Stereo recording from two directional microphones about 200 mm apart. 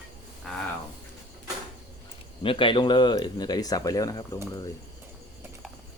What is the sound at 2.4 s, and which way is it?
Speech, 25° left (ahead or behind).